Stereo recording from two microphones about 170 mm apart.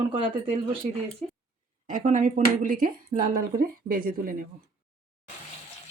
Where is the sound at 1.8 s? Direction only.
50° right (ahead or behind).